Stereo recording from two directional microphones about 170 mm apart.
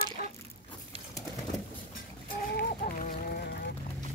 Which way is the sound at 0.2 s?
60° left (ahead or behind).